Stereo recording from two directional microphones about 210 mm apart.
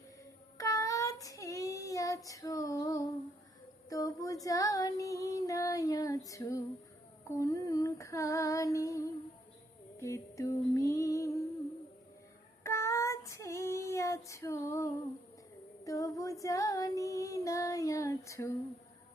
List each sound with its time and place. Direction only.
0.6 s child singing: 15° left (ahead or behind)
3.8 s female singing: 15° left (ahead or behind)
10.0 s music: 15° left (ahead or behind)
12.6 s child singing: 15° left (ahead or behind)
15.8 s female singing: 15° left (ahead or behind)